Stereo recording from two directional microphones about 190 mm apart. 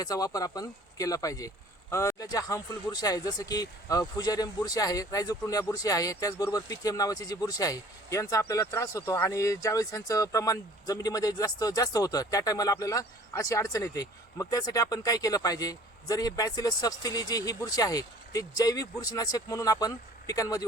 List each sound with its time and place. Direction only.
0.0 s speech: 20° left (ahead or behind)